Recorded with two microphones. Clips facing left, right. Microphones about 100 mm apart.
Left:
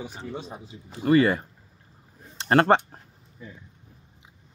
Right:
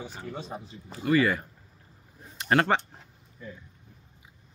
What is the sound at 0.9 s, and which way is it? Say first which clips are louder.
Speech: left 4 dB; 30° left (ahead or behind).